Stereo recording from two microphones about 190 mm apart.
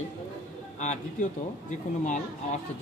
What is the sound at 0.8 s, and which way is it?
A man's voice, 40° left (ahead or behind).